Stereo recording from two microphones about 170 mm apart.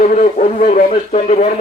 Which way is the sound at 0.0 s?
45° left (ahead or behind).